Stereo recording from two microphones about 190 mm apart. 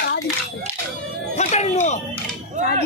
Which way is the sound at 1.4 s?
35° left (ahead or behind).